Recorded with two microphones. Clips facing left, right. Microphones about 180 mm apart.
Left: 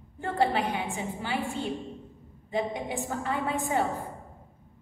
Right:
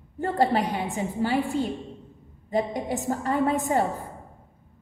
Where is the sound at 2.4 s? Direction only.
40° right (ahead or behind).